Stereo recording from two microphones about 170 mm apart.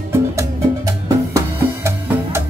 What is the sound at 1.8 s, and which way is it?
Music, 15° right (ahead or behind).